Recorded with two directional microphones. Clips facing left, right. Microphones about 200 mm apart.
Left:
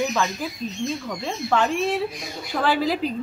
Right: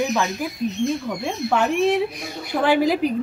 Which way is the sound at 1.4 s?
10° right (ahead or behind).